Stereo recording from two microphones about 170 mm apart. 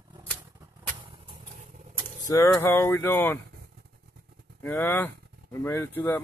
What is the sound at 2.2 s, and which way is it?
Speech, 20° left (ahead or behind).